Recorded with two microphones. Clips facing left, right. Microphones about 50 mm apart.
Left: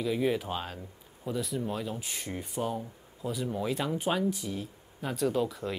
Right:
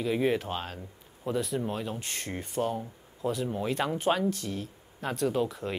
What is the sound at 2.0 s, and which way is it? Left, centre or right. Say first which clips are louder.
Speech: right 1 dB; centre.